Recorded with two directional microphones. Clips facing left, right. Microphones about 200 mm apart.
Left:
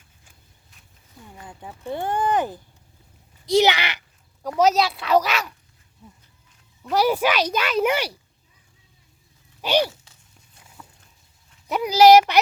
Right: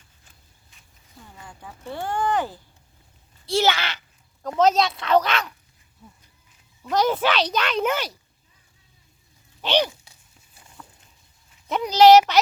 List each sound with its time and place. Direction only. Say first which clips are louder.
1.4 s speech: left 3 dB; 20° left (ahead or behind)
3.4 s a sound: left 4 dB; 15° left (ahead or behind)
4.4 s a child's voice: even; 10° left (ahead or behind)
6.9 s a child's voice: left 1 dB; 10° left (ahead or behind)
9.6 s speech: left 1 dB; 10° left (ahead or behind)
9.8 s walk: left 2 dB; 10° right (ahead or behind)
10.6 s a sound: even; 5° left (ahead or behind)
11.7 s a child's voice: even; 10° left (ahead or behind)